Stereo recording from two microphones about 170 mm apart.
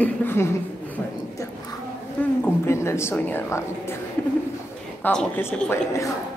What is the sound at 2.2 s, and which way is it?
A woman's voice, 15° left (ahead or behind).